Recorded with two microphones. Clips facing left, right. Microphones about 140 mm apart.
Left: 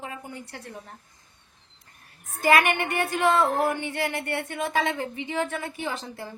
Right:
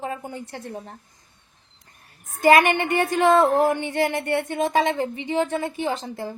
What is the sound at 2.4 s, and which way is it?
A woman's voice, 25° right (ahead or behind).